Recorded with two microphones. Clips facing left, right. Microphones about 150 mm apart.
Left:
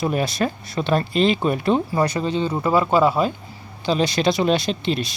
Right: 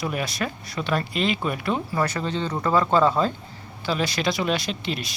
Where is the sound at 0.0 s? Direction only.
30° left (ahead or behind).